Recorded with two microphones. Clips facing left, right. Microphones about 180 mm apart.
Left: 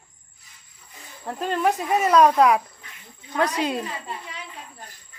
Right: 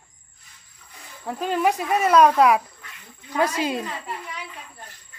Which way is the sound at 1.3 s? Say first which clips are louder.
Right 1 dB; centre (ahead or behind).